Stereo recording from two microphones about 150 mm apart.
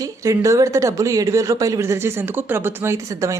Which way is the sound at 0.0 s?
20° right (ahead or behind).